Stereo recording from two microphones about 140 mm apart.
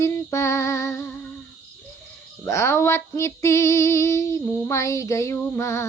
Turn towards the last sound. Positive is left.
turn(degrees=20)  # may be behind; listen again after turning